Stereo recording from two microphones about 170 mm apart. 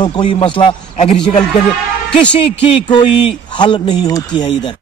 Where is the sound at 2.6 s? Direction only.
30° left (ahead or behind).